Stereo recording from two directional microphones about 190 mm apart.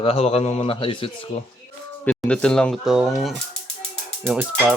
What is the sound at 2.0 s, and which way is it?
Speech, 5° left (ahead or behind).